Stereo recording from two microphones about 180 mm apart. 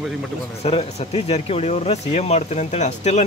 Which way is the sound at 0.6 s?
35° left (ahead or behind).